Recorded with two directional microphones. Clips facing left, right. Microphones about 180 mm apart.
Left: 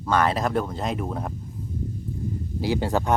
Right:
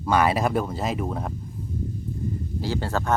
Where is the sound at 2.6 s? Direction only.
15° left (ahead or behind).